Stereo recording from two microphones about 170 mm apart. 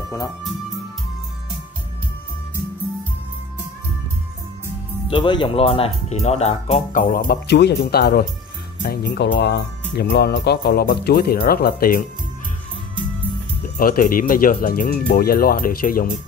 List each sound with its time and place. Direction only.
5.1 s speech: 30° left (ahead or behind); by 7.3 s 55° left (ahead or behind)
7.4 s speech: 90° left; by 8.3 s 65° left (ahead or behind)
8.8 s speech: 85° left; by 12.1 s 60° left (ahead or behind)
13.7 s speech: 55° left (ahead or behind)